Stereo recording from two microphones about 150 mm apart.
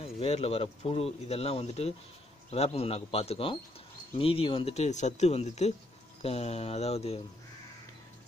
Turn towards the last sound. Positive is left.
turn(degrees=45)  # may be behind; listen again after turning